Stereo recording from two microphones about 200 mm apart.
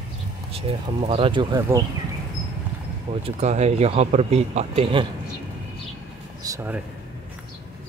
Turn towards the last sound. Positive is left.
turn(degrees=-15)  # may be behind; listen again after turning